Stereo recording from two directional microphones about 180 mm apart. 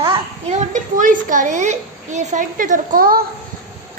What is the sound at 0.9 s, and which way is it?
A woman's voice, 45° right (ahead or behind).